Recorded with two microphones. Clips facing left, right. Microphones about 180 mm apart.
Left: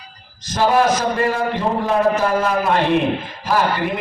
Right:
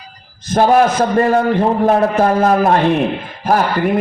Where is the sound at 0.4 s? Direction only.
55° right (ahead or behind).